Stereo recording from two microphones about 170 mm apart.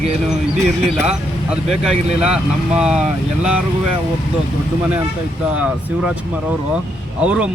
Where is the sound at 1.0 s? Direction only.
5° right (ahead or behind).